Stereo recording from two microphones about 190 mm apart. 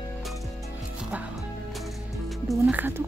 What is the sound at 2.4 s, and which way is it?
Speech, 5° right (ahead or behind).